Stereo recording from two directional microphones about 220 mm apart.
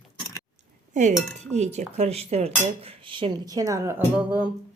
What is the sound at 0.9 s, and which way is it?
Speech, 35° right (ahead or behind).